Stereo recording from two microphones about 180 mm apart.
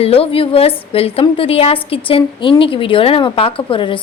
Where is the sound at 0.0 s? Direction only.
30° left (ahead or behind).